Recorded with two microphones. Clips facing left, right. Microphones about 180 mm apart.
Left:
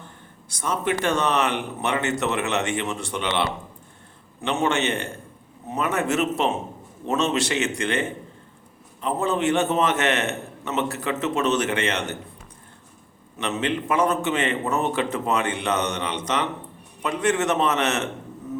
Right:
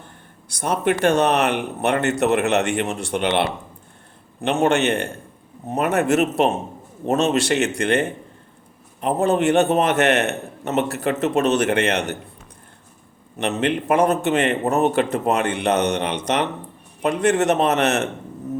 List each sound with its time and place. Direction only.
0.4 s a man's voice: 65° right (ahead or behind)
4.5 s a man's voice: 60° right (ahead or behind)
13.6 s a man's voice: 60° right (ahead or behind)